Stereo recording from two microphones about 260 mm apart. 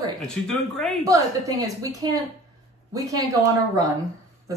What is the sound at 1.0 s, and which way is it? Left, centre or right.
Speech, centre.